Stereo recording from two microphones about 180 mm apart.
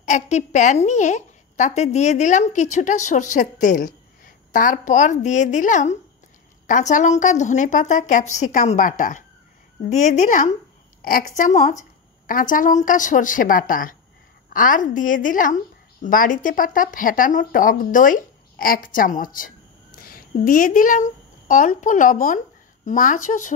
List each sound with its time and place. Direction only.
0.0 s a woman's voice: 40° left (ahead or behind)